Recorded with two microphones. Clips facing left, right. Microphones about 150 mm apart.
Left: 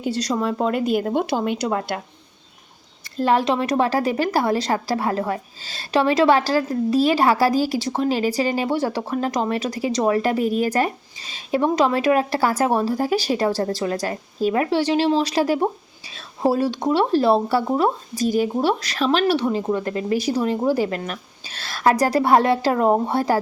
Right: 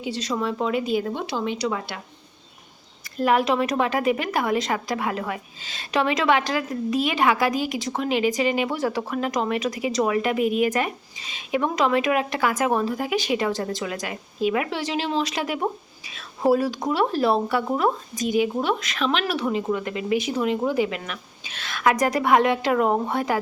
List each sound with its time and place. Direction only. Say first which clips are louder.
0.0 s speech: left 4 dB; 40° left (ahead or behind)
3.2 s a woman's voice: left 1 dB; 30° left (ahead or behind)